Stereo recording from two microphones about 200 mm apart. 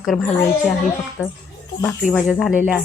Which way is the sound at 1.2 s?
10° left (ahead or behind).